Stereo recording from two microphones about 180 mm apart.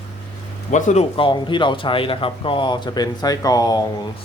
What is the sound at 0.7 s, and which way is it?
Speech, 40° left (ahead or behind).